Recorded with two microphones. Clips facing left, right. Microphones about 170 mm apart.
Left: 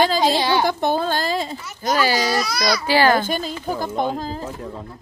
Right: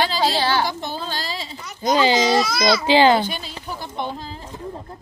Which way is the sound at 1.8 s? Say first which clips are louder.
Right 3 dB; 20° right (ahead or behind).